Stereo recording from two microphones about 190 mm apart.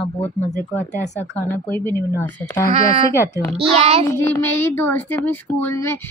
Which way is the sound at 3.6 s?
35° right (ahead or behind).